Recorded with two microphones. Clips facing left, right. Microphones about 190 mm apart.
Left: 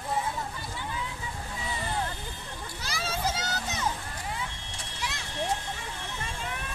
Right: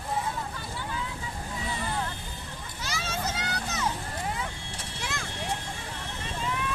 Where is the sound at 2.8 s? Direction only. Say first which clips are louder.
Even; 35° left (ahead or behind).